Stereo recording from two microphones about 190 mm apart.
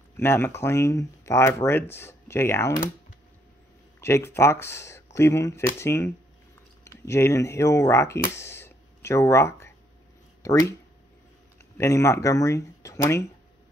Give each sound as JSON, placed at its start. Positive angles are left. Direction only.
{"t": 0.2, "sound": "speech", "side_deg": 10}
{"t": 4.0, "sound": "speech", "side_deg": 15}
{"t": 8.4, "sound": "a sound", "side_deg": 15}
{"t": 10.4, "sound": "speech", "side_deg": 15}
{"t": 11.8, "sound": "speech", "side_deg": 15}